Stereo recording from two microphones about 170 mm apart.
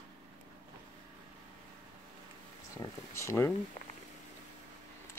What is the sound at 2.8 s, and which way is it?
Speech, 20° left (ahead or behind).